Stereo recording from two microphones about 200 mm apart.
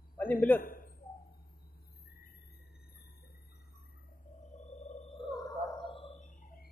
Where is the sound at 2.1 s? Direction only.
45° left (ahead or behind).